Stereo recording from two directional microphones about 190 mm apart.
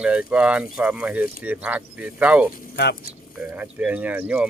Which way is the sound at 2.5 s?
55° left (ahead or behind).